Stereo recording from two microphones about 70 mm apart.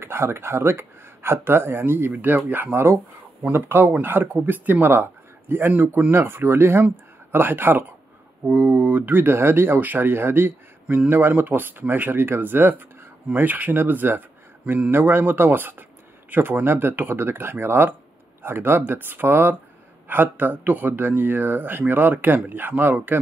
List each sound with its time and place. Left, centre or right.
0.0 s speech: right